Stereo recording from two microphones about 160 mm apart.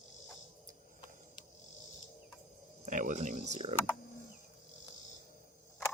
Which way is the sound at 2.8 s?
55° right (ahead or behind).